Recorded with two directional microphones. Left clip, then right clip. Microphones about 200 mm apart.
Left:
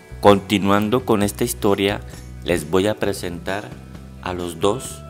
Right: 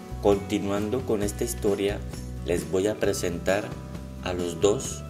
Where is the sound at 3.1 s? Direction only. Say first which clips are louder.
Even; 25° left (ahead or behind).